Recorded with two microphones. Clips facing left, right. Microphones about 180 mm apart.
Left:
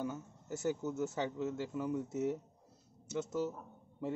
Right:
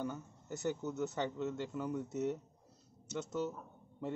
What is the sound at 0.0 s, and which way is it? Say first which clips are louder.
A man's voice: left 1 dB; 5° left (ahead or behind).